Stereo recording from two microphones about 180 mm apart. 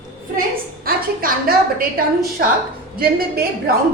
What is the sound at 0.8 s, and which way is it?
A woman's voice, 55° right (ahead or behind).